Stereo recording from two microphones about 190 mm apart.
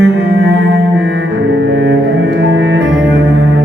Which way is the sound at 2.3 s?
70° right (ahead or behind).